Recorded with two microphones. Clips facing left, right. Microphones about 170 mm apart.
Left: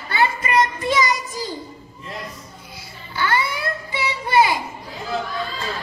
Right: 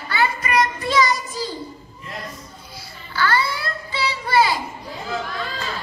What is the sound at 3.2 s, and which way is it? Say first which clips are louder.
Child singing: right 1 dB; 20° left (ahead or behind).